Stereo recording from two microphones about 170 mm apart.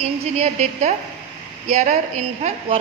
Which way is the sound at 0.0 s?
40° right (ahead or behind).